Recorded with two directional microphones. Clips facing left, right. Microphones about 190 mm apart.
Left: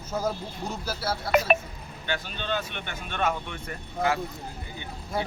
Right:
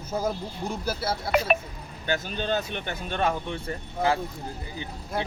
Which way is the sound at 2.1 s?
40° right (ahead or behind).